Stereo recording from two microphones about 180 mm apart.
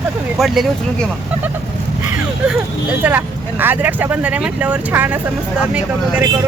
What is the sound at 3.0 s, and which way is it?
Speech, 10° right (ahead or behind).